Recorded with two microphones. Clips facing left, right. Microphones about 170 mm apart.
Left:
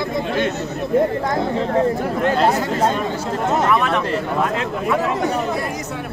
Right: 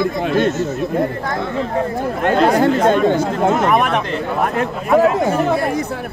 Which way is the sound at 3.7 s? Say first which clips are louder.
Right 2 dB; 55° right (ahead or behind).